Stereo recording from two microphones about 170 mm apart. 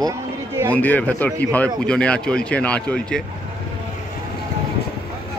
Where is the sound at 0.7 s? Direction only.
10° left (ahead or behind).